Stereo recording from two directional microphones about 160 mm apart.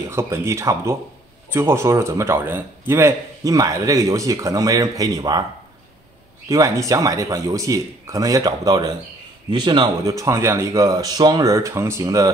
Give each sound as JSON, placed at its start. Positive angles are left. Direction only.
{"t": 0.1, "sound": "a man's voice", "side_deg": -15}
{"t": 6.5, "sound": "a man's voice", "side_deg": -20}